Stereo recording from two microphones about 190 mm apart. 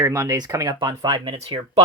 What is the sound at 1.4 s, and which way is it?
Speech, 30° right (ahead or behind).